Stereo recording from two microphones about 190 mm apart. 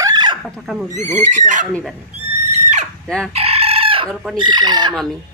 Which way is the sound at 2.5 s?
40° right (ahead or behind).